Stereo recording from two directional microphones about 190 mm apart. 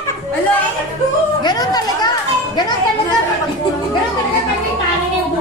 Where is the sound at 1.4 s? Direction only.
20° left (ahead or behind).